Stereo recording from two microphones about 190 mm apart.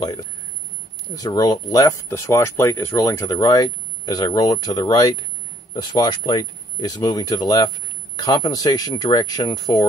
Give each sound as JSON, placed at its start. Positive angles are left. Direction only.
{"t": 0.0, "sound": "speech", "side_deg": 20}